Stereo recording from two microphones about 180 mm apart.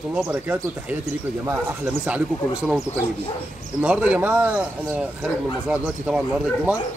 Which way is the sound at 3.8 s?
5° right (ahead or behind).